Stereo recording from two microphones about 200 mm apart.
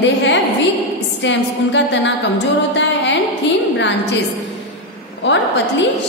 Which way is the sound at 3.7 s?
65° left (ahead or behind).